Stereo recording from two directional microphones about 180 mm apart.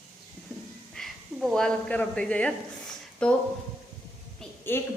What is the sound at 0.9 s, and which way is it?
A woman's voice, centre (ahead or behind).